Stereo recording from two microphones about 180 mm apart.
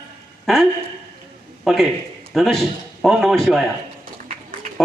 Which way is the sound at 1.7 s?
Centre (ahead or behind).